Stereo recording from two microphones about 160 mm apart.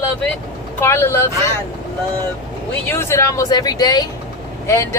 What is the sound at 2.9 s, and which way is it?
Speech, 15° left (ahead or behind).